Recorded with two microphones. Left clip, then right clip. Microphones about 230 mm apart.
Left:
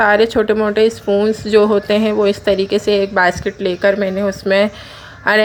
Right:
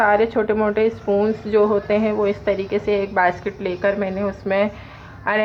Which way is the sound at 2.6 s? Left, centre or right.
Left.